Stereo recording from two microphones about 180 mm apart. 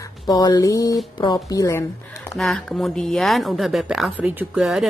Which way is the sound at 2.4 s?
Centre (ahead or behind).